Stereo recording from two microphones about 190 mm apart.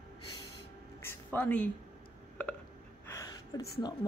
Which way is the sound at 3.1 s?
15° left (ahead or behind).